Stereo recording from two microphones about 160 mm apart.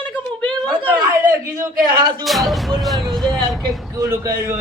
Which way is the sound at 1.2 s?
10° right (ahead or behind).